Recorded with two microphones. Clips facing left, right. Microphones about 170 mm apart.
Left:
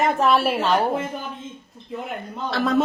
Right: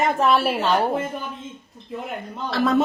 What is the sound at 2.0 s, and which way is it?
Speech, centre (ahead or behind).